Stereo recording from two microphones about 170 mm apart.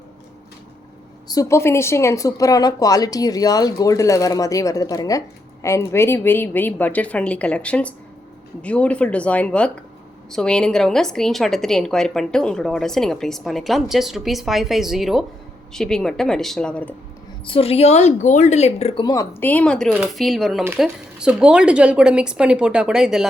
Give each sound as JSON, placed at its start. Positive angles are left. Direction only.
{"t": 1.3, "sound": "a woman's voice", "side_deg": 20}
{"t": 17.4, "sound": "a woman's voice", "side_deg": 35}
{"t": 19.0, "sound": "a woman's voice", "side_deg": 20}